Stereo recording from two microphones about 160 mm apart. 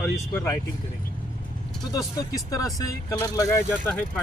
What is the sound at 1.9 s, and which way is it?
Speech, 20° left (ahead or behind).